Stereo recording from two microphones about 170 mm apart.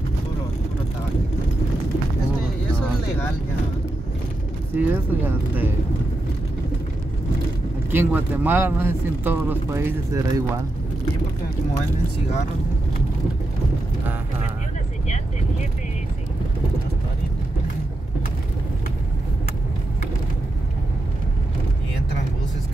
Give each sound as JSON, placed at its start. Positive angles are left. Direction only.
{"t": 4.7, "sound": "speech", "side_deg": -10}
{"t": 7.9, "sound": "speech", "side_deg": -10}